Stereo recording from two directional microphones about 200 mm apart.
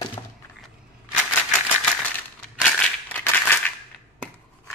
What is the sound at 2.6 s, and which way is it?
Crushing, 10° left (ahead or behind).